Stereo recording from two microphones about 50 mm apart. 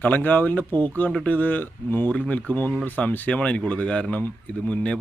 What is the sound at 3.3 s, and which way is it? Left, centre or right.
Speech, left.